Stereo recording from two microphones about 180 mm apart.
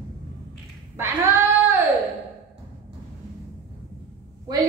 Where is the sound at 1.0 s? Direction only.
15° right (ahead or behind).